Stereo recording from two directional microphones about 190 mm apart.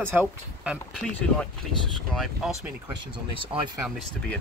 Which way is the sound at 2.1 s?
Centre (ahead or behind).